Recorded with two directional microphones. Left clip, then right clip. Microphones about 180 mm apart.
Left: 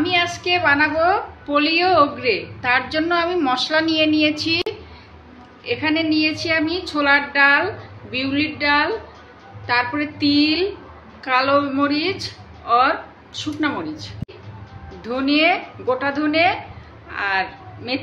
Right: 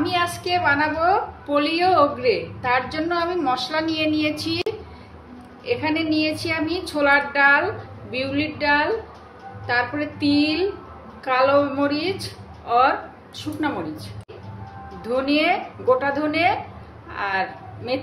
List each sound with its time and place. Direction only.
0.0 s a woman's voice: 20° left (ahead or behind)